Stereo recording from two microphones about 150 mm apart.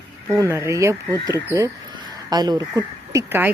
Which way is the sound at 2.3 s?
25° right (ahead or behind).